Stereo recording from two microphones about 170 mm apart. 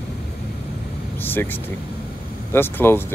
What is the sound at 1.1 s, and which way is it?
Vehicle, 10° left (ahead or behind).